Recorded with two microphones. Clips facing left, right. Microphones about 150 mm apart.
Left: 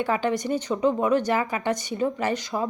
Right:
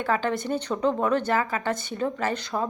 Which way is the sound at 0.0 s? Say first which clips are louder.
Left 1 dB; 15° left (ahead or behind).